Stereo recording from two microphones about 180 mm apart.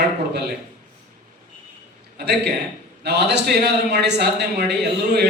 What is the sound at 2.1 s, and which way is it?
A man's voice, 65° right (ahead or behind).